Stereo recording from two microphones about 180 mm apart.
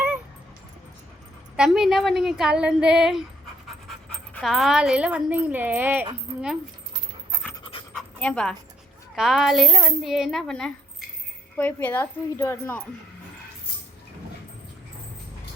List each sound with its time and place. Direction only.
1.5 s a woman's voice: 5° right (ahead or behind)
6.3 s speech: 35° right (ahead or behind)
7.6 s pant: 30° left (ahead or behind)
7.9 s dog: 5° left (ahead or behind)
9.1 s a woman's voice: 5° right (ahead or behind); by 12.8 s 15° left (ahead or behind)